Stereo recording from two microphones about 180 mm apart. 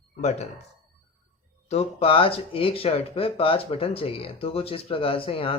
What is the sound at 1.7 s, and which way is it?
Speech, 30° left (ahead or behind).